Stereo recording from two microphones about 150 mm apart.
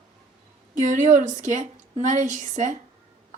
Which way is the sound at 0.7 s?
55° right (ahead or behind).